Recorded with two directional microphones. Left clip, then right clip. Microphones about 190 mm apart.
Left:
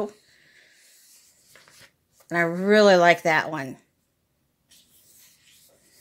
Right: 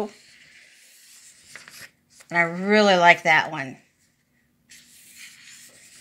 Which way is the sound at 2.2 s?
50° left (ahead or behind).